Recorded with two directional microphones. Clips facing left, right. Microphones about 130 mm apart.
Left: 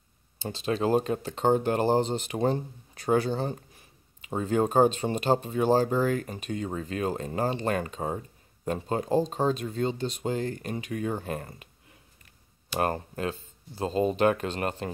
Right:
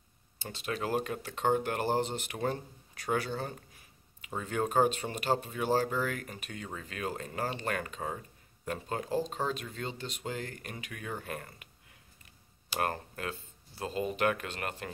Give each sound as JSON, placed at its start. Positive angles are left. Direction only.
{"t": 0.4, "sound": "speech", "side_deg": 30}
{"t": 12.7, "sound": "speech", "side_deg": 25}